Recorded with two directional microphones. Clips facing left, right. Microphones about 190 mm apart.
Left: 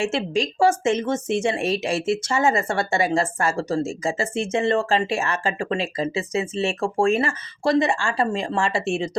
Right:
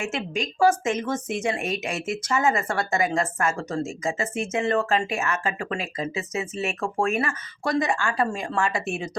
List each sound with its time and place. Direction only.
0.0 s a woman's voice: 30° left (ahead or behind)